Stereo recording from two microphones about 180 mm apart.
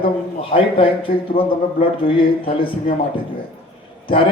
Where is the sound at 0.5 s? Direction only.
30° left (ahead or behind).